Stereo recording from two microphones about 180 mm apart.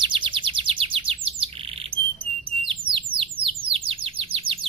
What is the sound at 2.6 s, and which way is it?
Bird, 30° right (ahead or behind).